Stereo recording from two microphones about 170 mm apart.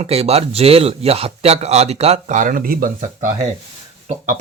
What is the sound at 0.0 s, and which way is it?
A man's voice, 35° right (ahead or behind).